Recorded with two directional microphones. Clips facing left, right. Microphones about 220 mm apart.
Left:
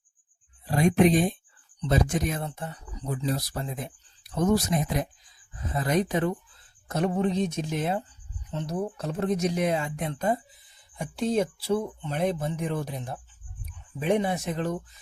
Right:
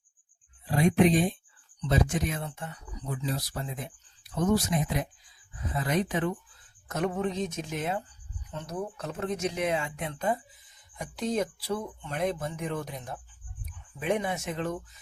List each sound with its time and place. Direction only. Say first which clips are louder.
0.7 s speech: left 2 dB; 45° left (ahead or behind)